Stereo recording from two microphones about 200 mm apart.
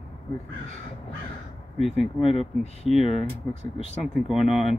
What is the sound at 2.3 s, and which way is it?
Speech, 30° left (ahead or behind).